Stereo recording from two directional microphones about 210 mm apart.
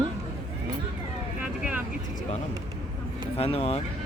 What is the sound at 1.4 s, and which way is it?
Vehicle, 5° right (ahead or behind).